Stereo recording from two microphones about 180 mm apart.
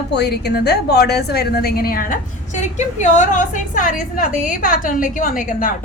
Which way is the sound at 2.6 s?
40° left (ahead or behind).